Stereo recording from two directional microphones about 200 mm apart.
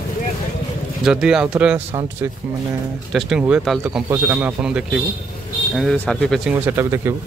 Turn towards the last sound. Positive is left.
turn(degrees=-15)  # may be behind; listen again after turning